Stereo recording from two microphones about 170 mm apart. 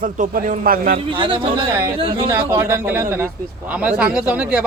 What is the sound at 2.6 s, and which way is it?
Speech, 15° right (ahead or behind).